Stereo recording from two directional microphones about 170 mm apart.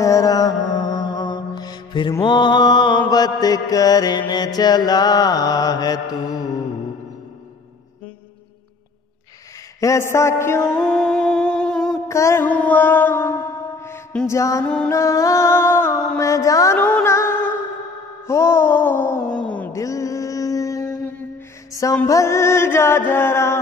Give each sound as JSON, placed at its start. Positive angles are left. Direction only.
{"t": 0.0, "sound": "music", "side_deg": 20}
{"t": 2.2, "sound": "mantra", "side_deg": 25}
{"t": 9.8, "sound": "music", "side_deg": 15}
{"t": 10.8, "sound": "music", "side_deg": 5}
{"t": 12.1, "sound": "music", "side_deg": 15}
{"t": 14.6, "sound": "music", "side_deg": 5}
{"t": 14.9, "sound": "music", "side_deg": 20}
{"t": 16.2, "sound": "mantra", "side_deg": 20}
{"t": 18.2, "sound": "speech", "side_deg": 15}
{"t": 19.7, "sound": "mantra", "side_deg": 20}
{"t": 21.7, "sound": "music", "side_deg": 20}